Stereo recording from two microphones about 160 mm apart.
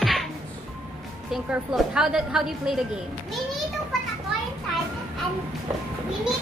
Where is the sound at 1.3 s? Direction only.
Centre (ahead or behind).